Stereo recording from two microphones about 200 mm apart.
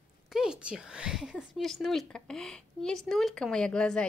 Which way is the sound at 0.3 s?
5° right (ahead or behind).